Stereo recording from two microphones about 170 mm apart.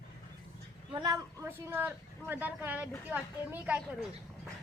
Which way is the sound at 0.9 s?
25° right (ahead or behind).